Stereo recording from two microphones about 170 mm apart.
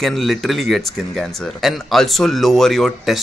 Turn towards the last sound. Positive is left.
turn(degrees=0)  # may be behind; listen again after turning